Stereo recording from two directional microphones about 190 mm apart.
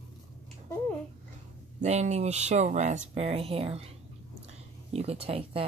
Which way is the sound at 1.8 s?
35° right (ahead or behind).